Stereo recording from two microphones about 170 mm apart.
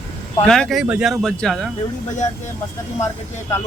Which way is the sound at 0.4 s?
5° left (ahead or behind).